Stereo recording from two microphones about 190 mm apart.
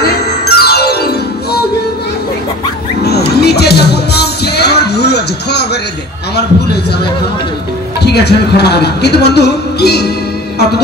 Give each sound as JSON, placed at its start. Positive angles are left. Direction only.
{"t": 0.0, "sound": "music", "side_deg": 55}
{"t": 3.0, "sound": "music", "side_deg": 60}
{"t": 8.1, "sound": "a man's voice", "side_deg": 60}